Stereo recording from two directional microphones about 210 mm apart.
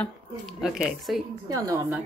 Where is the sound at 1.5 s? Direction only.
15° right (ahead or behind).